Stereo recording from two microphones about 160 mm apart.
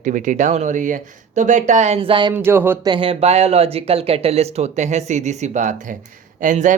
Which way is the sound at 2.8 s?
30° right (ahead or behind).